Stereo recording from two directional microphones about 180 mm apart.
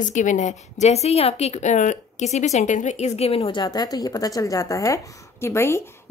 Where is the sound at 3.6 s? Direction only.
20° left (ahead or behind).